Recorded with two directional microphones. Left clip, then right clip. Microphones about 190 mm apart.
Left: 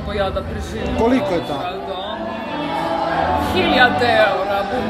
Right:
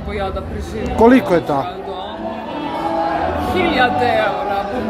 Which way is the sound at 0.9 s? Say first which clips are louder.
Right 6 dB; 55° right (ahead or behind).